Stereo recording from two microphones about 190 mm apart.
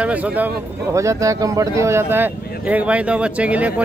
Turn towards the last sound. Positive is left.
turn(degrees=-5)  # may be behind; listen again after turning